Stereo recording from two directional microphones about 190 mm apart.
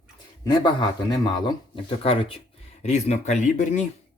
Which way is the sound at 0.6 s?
25° left (ahead or behind).